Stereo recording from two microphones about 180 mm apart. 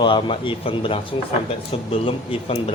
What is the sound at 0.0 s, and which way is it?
A man's voice, 25° left (ahead or behind).